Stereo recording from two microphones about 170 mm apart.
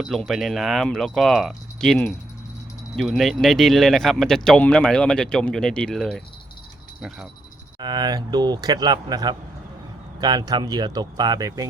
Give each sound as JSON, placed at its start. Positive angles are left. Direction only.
{"t": 0.0, "sound": "speech", "side_deg": 0}
{"t": 7.8, "sound": "speech", "side_deg": -25}